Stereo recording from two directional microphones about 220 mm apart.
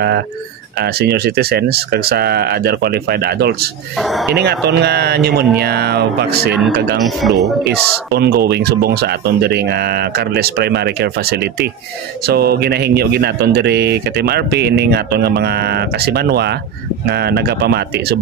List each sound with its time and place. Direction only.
0.9 s speech: 45° right (ahead or behind)
7.2 s speech: centre (ahead or behind)
8.1 s speech: 45° right (ahead or behind)